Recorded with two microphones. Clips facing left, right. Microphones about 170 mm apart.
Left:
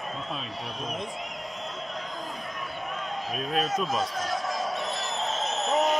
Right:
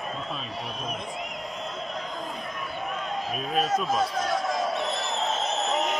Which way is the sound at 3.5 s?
Centre (ahead or behind).